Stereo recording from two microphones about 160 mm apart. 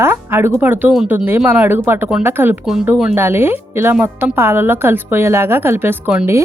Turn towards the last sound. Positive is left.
turn(degrees=-10)  # may be behind; listen again after turning